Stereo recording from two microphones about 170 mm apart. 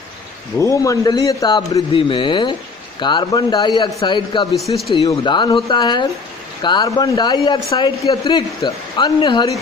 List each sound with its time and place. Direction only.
0.6 s a man's voice: 20° left (ahead or behind)